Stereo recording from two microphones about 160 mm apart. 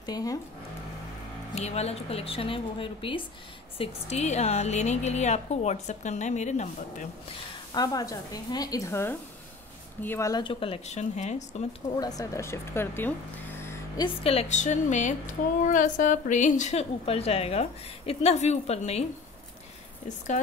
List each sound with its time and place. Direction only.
0.0 s speech: 25° left (ahead or behind)
1.5 s a woman's voice: 40° left (ahead or behind)
7.7 s speech: 25° left (ahead or behind)
10.4 s a woman's voice: 35° left (ahead or behind)
11.9 s speech: 25° left (ahead or behind)
13.9 s a woman's voice: 35° left (ahead or behind)